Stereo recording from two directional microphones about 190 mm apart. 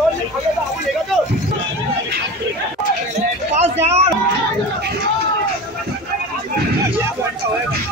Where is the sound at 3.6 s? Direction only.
35° right (ahead or behind).